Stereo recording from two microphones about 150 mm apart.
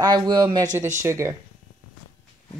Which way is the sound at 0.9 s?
20° right (ahead or behind).